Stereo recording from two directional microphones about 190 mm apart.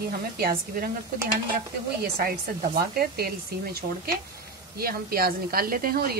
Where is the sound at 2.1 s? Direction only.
50° right (ahead or behind).